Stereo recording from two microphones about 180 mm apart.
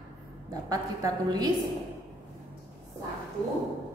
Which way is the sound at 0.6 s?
20° right (ahead or behind).